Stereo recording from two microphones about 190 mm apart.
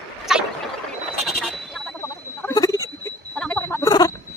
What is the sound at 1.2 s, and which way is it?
Frog, centre (ahead or behind).